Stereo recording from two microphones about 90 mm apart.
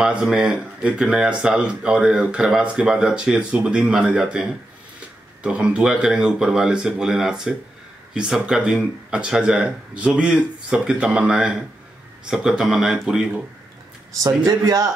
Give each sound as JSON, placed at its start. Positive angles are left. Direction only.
{"t": 0.0, "sound": "speech", "side_deg": -10}
{"t": 14.4, "sound": "a man's voice", "side_deg": -40}